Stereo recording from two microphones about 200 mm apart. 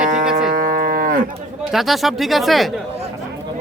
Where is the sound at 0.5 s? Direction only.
45° right (ahead or behind).